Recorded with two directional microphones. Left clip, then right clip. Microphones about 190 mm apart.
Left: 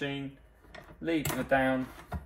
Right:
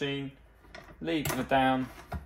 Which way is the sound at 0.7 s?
Centre (ahead or behind).